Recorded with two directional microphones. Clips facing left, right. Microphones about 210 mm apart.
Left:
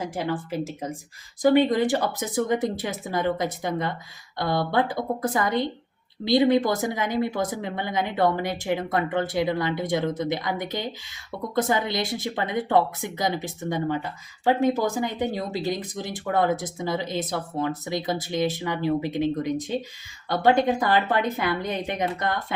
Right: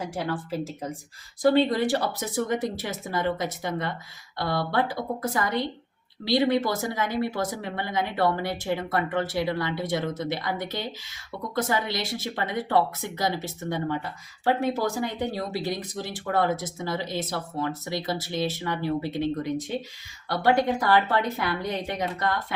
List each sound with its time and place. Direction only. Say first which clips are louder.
0.2 s speech: left 2 dB; 20° left (ahead or behind)